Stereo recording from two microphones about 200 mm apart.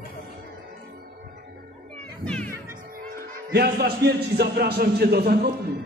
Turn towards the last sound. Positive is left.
turn(degrees=-50)  # may be behind; listen again after turning